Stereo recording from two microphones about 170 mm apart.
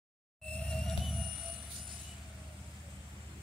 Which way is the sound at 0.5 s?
5° left (ahead or behind).